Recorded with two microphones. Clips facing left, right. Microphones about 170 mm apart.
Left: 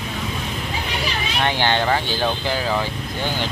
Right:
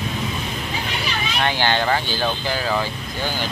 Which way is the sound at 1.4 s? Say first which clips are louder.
Left 1 dB; 25° left (ahead or behind).